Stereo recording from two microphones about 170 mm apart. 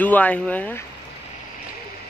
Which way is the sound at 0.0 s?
10° left (ahead or behind).